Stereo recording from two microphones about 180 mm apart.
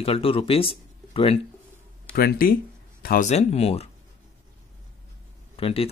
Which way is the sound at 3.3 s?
35° left (ahead or behind).